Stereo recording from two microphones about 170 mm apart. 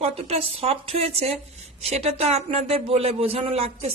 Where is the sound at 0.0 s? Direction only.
35° right (ahead or behind).